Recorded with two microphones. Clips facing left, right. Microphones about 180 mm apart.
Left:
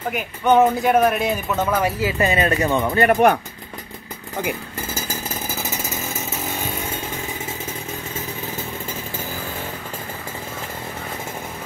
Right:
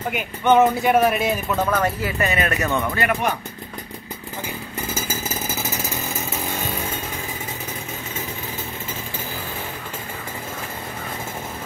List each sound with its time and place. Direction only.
0.1 s speech: centre (ahead or behind)
2.1 s speech: 30° left (ahead or behind)
2.6 s speech: 15° left (ahead or behind)
3.2 s speech: 60° left (ahead or behind)
5.6 s chainsaw: centre (ahead or behind)